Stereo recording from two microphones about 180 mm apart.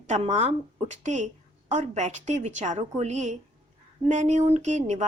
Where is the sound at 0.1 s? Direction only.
40° right (ahead or behind).